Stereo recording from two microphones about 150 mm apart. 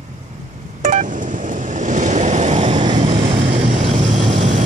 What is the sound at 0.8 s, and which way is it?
Telephone dialing, 55° right (ahead or behind).